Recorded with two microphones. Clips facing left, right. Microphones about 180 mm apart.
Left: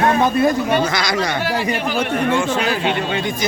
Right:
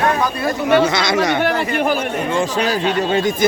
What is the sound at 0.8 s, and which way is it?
Speech, 25° right (ahead or behind).